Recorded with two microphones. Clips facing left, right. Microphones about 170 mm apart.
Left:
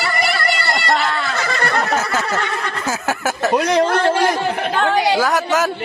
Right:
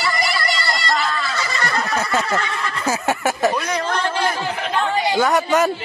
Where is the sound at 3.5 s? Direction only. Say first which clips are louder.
Left 8 dB; 85° left.